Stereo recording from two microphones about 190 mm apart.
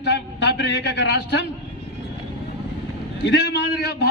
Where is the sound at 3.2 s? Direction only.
60° left (ahead or behind).